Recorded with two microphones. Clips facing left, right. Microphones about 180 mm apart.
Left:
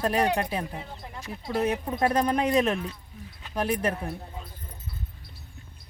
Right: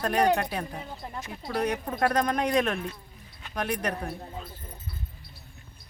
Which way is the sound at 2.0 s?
25° left (ahead or behind).